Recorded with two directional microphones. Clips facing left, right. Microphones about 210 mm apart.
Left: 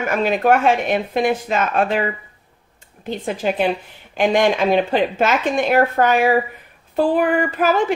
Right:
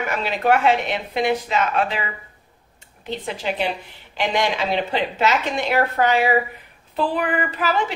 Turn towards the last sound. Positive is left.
turn(degrees=50)  # may be behind; listen again after turning